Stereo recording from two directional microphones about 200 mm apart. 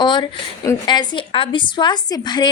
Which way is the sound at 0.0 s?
20° left (ahead or behind).